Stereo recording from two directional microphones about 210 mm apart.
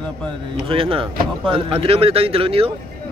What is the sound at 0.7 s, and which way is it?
Speech, 25° right (ahead or behind).